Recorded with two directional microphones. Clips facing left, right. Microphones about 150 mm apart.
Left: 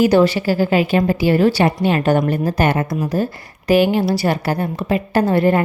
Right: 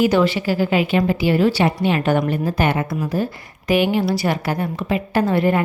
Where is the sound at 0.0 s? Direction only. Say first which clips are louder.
Left 3 dB; 40° left (ahead or behind).